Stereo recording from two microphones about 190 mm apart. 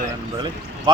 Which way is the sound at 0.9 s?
25° right (ahead or behind).